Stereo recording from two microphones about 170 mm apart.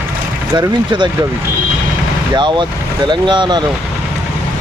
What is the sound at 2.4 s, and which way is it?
Speech, 25° right (ahead or behind).